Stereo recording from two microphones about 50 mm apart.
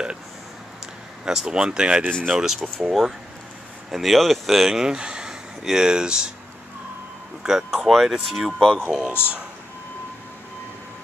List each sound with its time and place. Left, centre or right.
1.2 s speech: centre
2.9 s speech: centre
7.4 s speech: centre
8.7 s speech: centre